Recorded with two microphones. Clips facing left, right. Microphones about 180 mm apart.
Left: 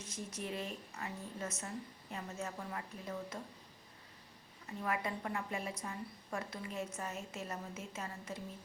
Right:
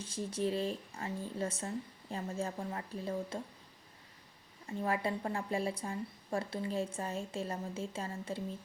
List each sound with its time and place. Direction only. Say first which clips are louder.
0.0 s speech: right 9 dB; 30° right (ahead or behind)
4.6 s a woman's voice: right 4 dB; 30° right (ahead or behind)